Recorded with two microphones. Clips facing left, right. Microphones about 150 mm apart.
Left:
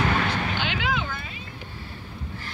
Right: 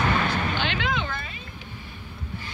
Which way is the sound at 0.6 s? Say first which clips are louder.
Even; 10° left (ahead or behind).